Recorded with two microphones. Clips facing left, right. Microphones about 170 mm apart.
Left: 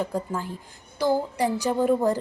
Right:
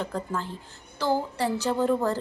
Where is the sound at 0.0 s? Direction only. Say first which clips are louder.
Left 3 dB; 10° left (ahead or behind).